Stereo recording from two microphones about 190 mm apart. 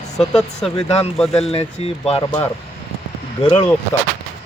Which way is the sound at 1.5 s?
30° left (ahead or behind).